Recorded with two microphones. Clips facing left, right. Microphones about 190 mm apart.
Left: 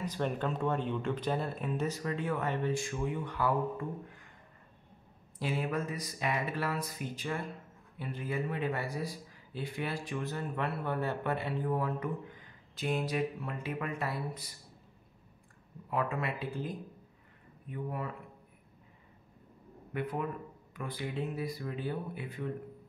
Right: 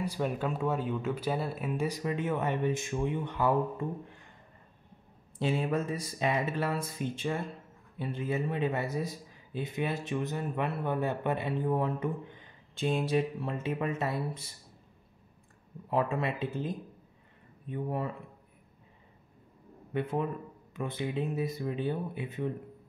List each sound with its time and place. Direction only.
0.0 s speech: 10° right (ahead or behind); by 4.3 s 25° right (ahead or behind)
5.4 s speech: 25° right (ahead or behind)
15.9 s speech: 25° right (ahead or behind)
19.9 s speech: 25° right (ahead or behind)